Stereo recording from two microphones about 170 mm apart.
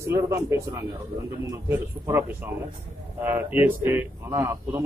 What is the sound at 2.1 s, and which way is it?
A man's voice, 15° right (ahead or behind).